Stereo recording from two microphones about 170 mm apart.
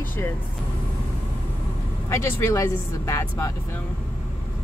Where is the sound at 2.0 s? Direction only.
15° left (ahead or behind).